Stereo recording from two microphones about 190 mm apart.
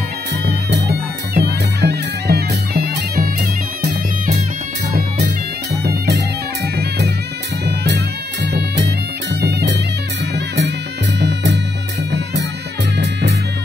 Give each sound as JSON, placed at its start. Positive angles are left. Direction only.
{"t": 0.5, "sound": "music", "side_deg": -60}
{"t": 5.9, "sound": "music", "side_deg": -60}
{"t": 7.6, "sound": "music", "side_deg": -60}
{"t": 12.9, "sound": "music", "side_deg": -65}